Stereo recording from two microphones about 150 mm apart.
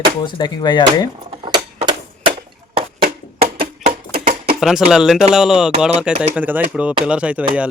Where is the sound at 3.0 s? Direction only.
90° right.